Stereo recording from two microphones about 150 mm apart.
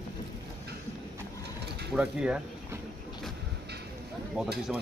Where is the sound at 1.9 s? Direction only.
5° right (ahead or behind).